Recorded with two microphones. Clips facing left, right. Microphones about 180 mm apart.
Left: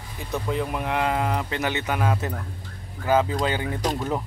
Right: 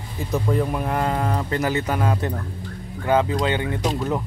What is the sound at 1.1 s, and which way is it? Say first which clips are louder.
Speech: right 1 dB; 10° left (ahead or behind).